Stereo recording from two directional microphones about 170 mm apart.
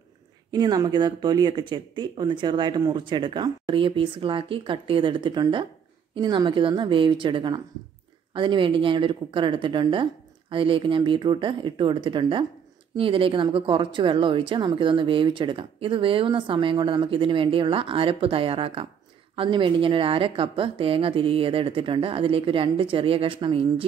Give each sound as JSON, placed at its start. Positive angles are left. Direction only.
{"t": 0.5, "sound": "a woman's voice", "side_deg": -25}